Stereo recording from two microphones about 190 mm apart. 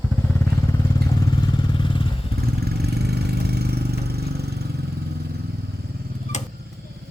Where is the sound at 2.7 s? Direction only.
60° right (ahead or behind).